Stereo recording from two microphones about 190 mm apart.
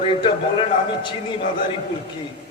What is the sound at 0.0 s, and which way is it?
Speech, 25° left (ahead or behind).